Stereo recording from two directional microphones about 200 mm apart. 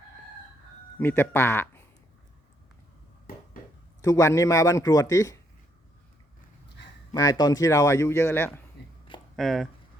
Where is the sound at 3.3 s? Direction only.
45° left (ahead or behind).